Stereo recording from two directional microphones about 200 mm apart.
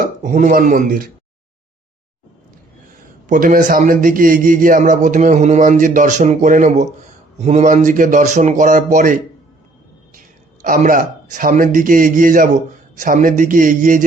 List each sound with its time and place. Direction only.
0.0 s speech: 40° right (ahead or behind)
3.2 s a man's voice: 40° right (ahead or behind)